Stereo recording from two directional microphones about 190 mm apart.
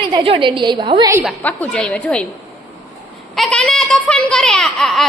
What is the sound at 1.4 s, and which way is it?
Speech, 5° left (ahead or behind).